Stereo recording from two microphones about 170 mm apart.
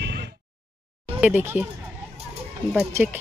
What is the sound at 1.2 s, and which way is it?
Speech, 10° right (ahead or behind).